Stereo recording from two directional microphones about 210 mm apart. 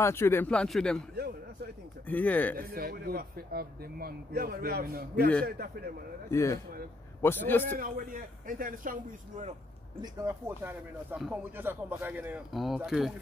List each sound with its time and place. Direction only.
0.0 s speech: 10° left (ahead or behind)
2.0 s speech: 10° left (ahead or behind)
2.5 s speech: 45° right (ahead or behind)
6.3 s speech: 15° left (ahead or behind)
7.6 s a man's voice: 45° right (ahead or behind)
10.2 s speech: 10° right (ahead or behind)